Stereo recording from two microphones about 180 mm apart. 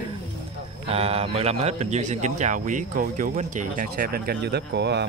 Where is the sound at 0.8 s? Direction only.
35° right (ahead or behind).